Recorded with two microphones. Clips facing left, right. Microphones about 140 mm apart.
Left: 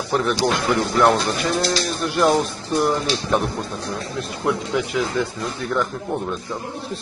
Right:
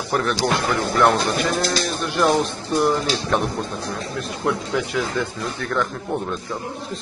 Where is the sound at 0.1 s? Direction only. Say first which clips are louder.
Left 1 dB; centre (ahead or behind).